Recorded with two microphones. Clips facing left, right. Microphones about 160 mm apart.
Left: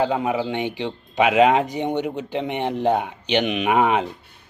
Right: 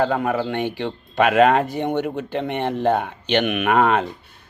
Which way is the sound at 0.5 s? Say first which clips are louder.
Right 1 dB; 15° left (ahead or behind).